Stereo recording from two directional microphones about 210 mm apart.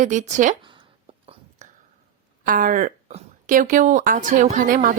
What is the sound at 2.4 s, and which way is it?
A woman's voice, 40° right (ahead or behind).